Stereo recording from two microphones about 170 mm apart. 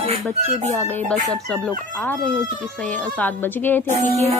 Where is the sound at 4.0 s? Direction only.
40° right (ahead or behind).